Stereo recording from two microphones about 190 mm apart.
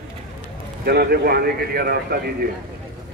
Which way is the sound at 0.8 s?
55° right (ahead or behind).